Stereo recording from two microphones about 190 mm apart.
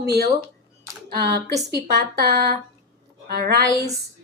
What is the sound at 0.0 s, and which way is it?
A woman's voice, 60° right (ahead or behind).